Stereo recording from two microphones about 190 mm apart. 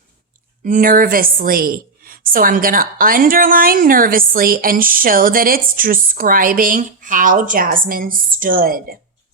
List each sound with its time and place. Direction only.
0.6 s a woman's voice: 45° right (ahead or behind)